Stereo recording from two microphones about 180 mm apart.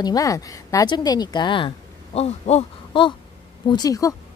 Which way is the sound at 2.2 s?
35° left (ahead or behind).